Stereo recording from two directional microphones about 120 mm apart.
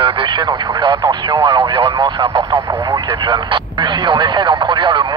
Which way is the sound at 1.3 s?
45° right (ahead or behind).